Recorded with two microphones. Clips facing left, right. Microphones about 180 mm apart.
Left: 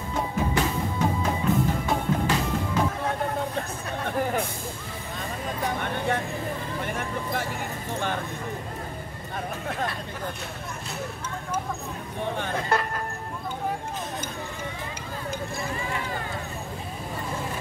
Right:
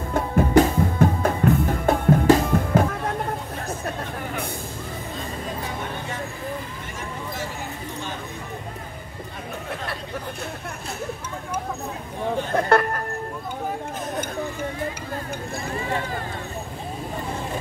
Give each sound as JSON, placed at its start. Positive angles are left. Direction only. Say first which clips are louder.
{"t": 0.1, "sound": "drum", "louder": "right 9 dB", "side_deg": -55}
{"t": 12.5, "sound": "music", "louder": "right 9 dB", "side_deg": -60}